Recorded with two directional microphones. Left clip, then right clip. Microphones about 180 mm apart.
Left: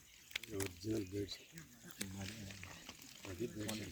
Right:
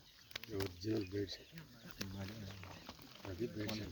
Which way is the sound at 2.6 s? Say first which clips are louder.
Even; centre (ahead or behind).